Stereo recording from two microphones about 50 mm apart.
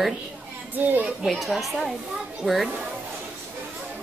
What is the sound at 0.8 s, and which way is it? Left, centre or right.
Speech, right.